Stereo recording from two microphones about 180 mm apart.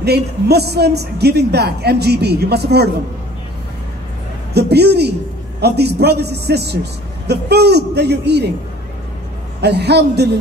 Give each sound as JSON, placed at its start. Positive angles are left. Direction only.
{"t": 0.0, "sound": "a man's voice", "side_deg": -65}
{"t": 4.6, "sound": "a man's voice", "side_deg": -65}
{"t": 9.6, "sound": "a man's voice", "side_deg": -65}